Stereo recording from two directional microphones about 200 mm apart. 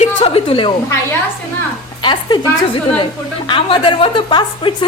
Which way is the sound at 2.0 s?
25° left (ahead or behind).